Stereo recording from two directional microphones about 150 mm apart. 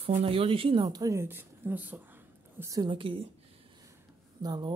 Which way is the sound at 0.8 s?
25° right (ahead or behind).